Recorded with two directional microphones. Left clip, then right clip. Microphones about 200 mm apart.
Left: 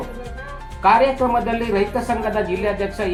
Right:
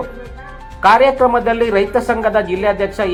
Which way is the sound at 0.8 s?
35° right (ahead or behind).